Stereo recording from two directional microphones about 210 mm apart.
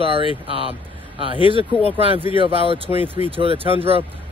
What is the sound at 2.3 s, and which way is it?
Speech, 25° right (ahead or behind).